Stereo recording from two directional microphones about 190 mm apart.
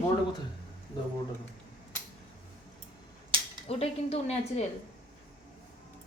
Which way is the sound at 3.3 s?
25° right (ahead or behind).